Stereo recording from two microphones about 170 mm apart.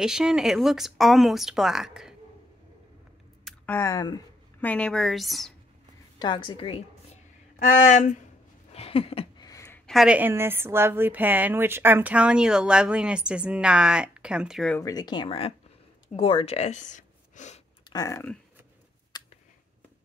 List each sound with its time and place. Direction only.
0.0 s speech: 5° right (ahead or behind)
3.4 s speech: 10° left (ahead or behind)
4.6 s speech: 10° left (ahead or behind)
6.1 s speech: 25° left (ahead or behind)
7.5 s speech: 45° left (ahead or behind)
8.7 s a sound: 35° left (ahead or behind)
9.5 s a sound: 20° left (ahead or behind)
9.8 s a woman's voice: 5° right (ahead or behind)
14.7 s speech: 20° left (ahead or behind); by 17.6 s 45° left (ahead or behind)
17.8 s speech: 20° left (ahead or behind)
19.1 s a sound: 25° left (ahead or behind)